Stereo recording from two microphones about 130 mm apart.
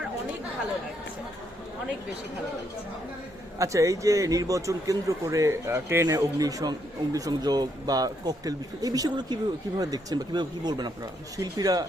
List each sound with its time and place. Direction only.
3.6 s a man's voice: 25° right (ahead or behind)